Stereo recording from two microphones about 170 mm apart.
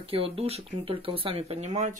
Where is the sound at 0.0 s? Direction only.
35° right (ahead or behind).